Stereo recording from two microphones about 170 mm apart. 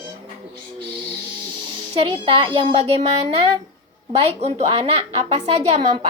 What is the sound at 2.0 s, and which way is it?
Speech, 30° right (ahead or behind).